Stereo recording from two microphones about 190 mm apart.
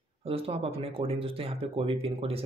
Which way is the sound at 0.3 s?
30° right (ahead or behind).